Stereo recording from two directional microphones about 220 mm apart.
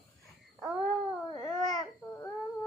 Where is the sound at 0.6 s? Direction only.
Centre (ahead or behind).